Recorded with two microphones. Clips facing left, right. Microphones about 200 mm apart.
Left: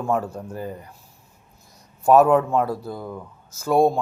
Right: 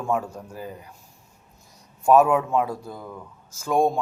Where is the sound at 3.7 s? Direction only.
35° left (ahead or behind).